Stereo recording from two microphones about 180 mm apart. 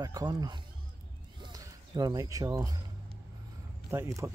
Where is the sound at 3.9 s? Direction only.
15° right (ahead or behind).